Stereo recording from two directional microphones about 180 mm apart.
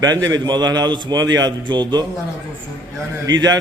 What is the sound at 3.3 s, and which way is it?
Speech, 90° right.